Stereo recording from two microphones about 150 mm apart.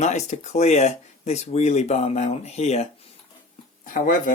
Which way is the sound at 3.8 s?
65° left (ahead or behind).